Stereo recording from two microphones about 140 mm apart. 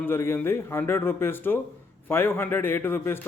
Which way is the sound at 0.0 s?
15° left (ahead or behind).